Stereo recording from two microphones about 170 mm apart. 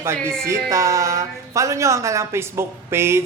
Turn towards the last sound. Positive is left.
turn(degrees=-15)  # may be behind; listen again after turning